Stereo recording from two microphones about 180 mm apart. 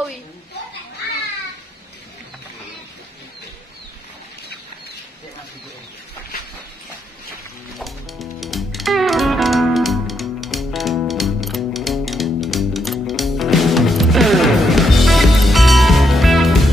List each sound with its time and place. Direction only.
7.8 s music: centre (ahead or behind)